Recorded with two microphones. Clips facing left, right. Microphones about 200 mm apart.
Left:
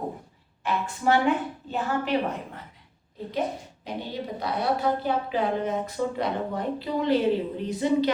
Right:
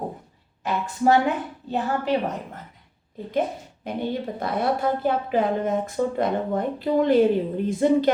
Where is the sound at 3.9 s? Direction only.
55° right (ahead or behind).